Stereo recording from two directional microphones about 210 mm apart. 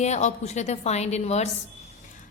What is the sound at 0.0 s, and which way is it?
A woman's voice, 35° left (ahead or behind).